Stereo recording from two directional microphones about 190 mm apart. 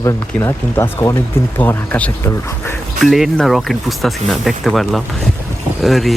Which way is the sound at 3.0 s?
Centre (ahead or behind).